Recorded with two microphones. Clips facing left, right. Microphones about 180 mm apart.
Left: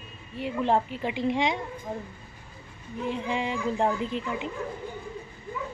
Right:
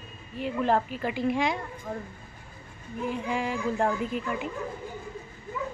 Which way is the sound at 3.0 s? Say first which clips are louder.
Even; 20° left (ahead or behind).